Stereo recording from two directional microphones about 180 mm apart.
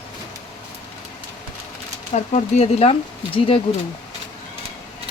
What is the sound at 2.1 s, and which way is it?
Speech, 40° left (ahead or behind).